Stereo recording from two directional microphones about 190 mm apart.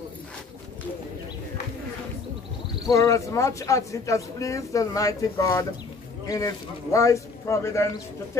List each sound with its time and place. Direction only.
2.9 s speech: 15° left (ahead or behind)